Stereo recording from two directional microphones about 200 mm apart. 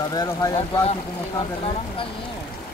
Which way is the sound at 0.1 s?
20° left (ahead or behind).